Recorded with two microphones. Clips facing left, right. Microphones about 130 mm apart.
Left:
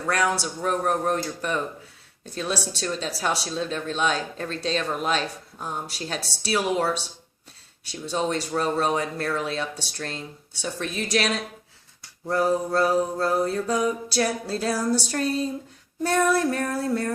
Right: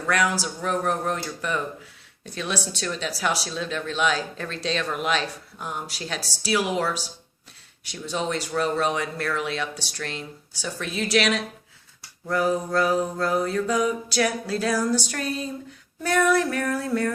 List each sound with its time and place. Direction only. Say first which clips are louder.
0.1 s speech: even; 35° left (ahead or behind)
7.9 s speech: left 2 dB; 30° left (ahead or behind)